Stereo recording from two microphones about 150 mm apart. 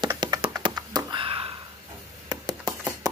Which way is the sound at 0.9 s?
35° right (ahead or behind).